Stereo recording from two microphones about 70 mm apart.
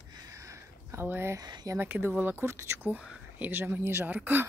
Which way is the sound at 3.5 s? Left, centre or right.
Right.